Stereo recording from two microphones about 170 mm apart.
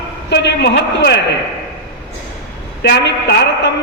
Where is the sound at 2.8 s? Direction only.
85° left.